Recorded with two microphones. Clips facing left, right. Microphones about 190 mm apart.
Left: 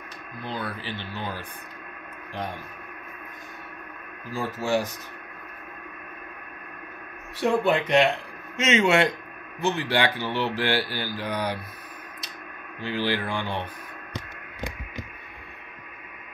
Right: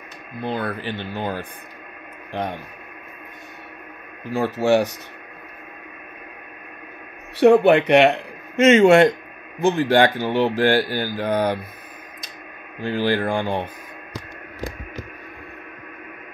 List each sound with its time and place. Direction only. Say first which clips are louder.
0.4 s speech: right 7 dB; 55° right (ahead or behind)
4.3 s speech: right 8 dB; 65° right (ahead or behind)
7.3 s speech: right 10 dB; 70° right (ahead or behind)
8.5 s speech: right 9 dB; 55° right (ahead or behind)
12.8 s speech: right 6 dB; 45° right (ahead or behind)